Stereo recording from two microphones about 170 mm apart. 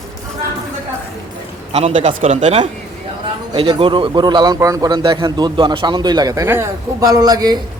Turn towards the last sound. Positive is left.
turn(degrees=-20)  # may be behind; listen again after turning